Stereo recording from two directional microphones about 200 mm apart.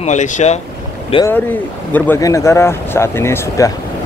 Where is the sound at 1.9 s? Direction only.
10° left (ahead or behind).